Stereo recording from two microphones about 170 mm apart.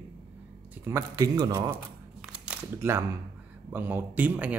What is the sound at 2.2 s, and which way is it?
Camera, 5° right (ahead or behind).